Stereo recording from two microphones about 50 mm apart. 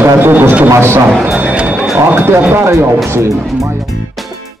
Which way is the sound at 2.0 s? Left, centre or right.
Right.